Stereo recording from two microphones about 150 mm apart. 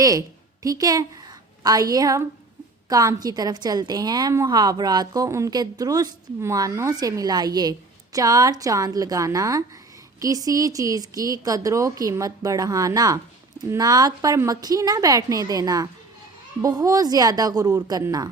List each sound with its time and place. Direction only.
0.0 s a woman's voice: 25° right (ahead or behind)